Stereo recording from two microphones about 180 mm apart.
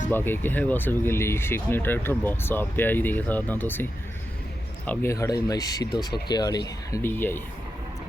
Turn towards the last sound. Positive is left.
turn(degrees=10)  # may be behind; listen again after turning